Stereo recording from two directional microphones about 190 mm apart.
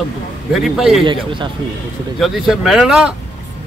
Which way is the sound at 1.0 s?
25° right (ahead or behind).